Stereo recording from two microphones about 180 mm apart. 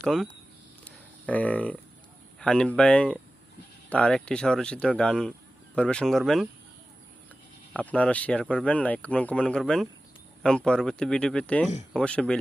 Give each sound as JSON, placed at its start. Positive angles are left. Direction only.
{"t": 0.0, "sound": "speech", "side_deg": 0}
{"t": 0.9, "sound": "a sound", "side_deg": 10}
{"t": 2.4, "sound": "speech", "side_deg": 5}
{"t": 7.7, "sound": "speech", "side_deg": 10}